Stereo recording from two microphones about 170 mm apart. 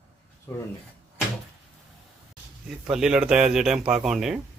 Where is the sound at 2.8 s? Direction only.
5° right (ahead or behind).